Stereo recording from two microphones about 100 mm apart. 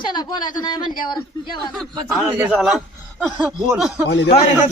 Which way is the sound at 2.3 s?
15° right (ahead or behind).